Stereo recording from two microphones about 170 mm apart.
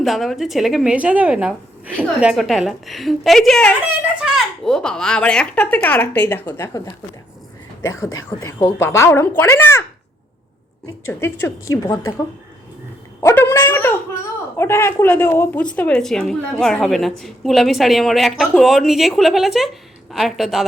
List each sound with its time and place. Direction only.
0.0 s a woman's voice: centre (ahead or behind); by 9.8 s 15° left (ahead or behind)
10.8 s a woman's voice: 15° left (ahead or behind)
13.2 s speech: 15° left (ahead or behind); by 20.7 s centre (ahead or behind)